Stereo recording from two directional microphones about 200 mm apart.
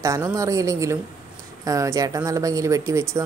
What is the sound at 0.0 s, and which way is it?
Speech, 15° right (ahead or behind).